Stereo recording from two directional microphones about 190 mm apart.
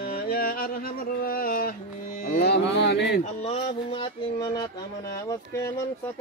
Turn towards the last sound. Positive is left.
turn(degrees=15)  # may be behind; listen again after turning